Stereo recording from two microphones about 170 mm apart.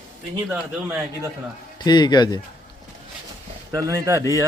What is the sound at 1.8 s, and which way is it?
Speech, 25° left (ahead or behind).